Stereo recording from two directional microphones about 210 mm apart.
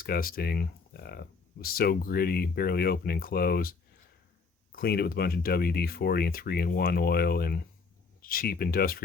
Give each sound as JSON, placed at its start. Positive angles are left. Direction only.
{"t": 0.0, "sound": "speech", "side_deg": 45}